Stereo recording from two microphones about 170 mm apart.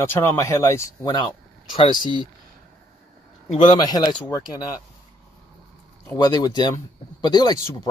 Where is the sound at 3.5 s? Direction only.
30° left (ahead or behind).